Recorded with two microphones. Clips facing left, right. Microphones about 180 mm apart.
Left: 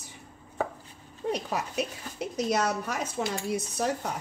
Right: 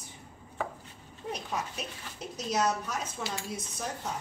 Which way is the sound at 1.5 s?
70° left (ahead or behind).